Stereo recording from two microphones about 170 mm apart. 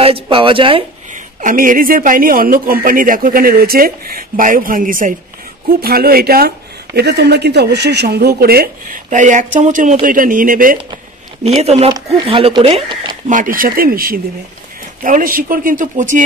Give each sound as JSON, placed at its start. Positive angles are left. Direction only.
{"t": 0.0, "sound": "a woman's voice", "side_deg": -30}
{"t": 1.1, "sound": "speech", "side_deg": -50}
{"t": 5.7, "sound": "speech", "side_deg": -60}
{"t": 11.4, "sound": "a woman's voice", "side_deg": -40}
{"t": 13.3, "sound": "speech", "side_deg": -50}